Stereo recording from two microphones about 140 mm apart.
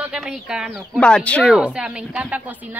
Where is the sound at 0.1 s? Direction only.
5° right (ahead or behind).